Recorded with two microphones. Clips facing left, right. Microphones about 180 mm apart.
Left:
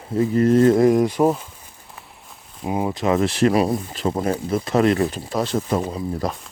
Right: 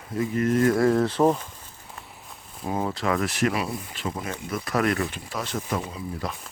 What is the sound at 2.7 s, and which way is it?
Speech, 20° left (ahead or behind).